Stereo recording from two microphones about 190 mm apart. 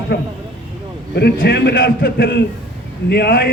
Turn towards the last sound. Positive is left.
turn(degrees=55)  # may be behind; listen again after turning